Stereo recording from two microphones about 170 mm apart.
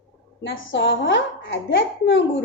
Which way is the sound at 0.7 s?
90° left.